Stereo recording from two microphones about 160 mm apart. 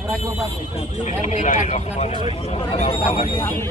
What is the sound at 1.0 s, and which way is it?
Speech, 50° left (ahead or behind).